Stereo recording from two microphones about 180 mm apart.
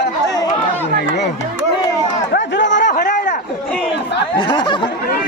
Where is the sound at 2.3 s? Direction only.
85° left.